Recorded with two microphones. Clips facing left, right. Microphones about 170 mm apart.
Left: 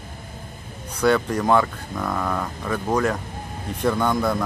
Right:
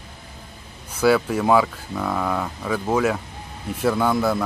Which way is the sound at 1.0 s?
5° right (ahead or behind).